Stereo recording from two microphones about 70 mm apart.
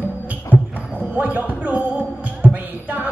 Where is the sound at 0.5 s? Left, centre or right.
Right.